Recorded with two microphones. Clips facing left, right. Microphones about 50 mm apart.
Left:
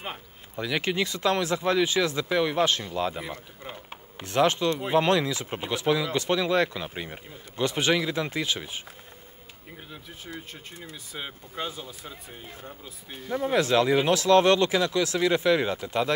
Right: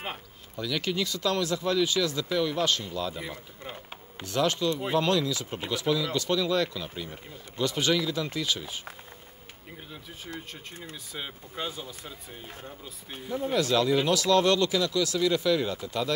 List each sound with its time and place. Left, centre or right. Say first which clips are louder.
0.6 s speech: left 3 dB; left
3.2 s speech: left 2 dB; centre
4.2 s speech: left 4 dB; left
10.3 s speech: even; centre
13.3 s speech: left 3 dB; left